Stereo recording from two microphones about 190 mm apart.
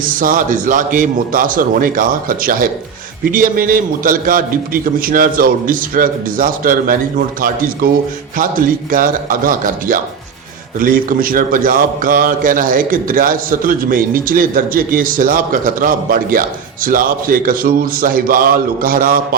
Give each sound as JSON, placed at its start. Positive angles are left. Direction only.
{"t": 0.0, "sound": "a man's voice", "side_deg": -45}